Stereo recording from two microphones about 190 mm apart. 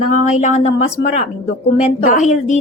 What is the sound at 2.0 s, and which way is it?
Speech, 40° left (ahead or behind).